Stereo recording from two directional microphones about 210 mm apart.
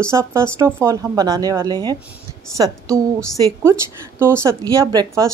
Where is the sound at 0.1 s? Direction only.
15° right (ahead or behind).